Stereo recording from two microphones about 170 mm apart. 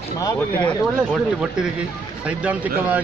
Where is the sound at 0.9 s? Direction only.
5° right (ahead or behind).